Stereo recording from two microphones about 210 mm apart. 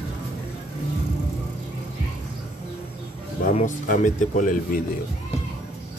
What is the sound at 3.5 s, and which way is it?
Speech, 35° left (ahead or behind).